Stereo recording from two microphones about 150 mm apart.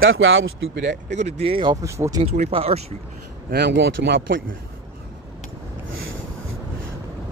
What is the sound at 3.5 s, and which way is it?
Speech, 90° right.